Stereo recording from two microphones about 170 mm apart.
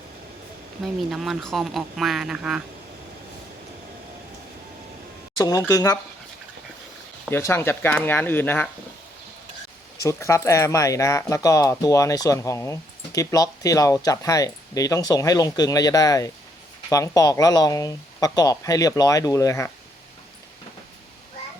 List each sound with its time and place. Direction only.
1.1 s speech: centre (ahead or behind)
5.4 s speech: 20° left (ahead or behind)
7.3 s speech: 15° left (ahead or behind)
10.0 s speech: 20° left (ahead or behind)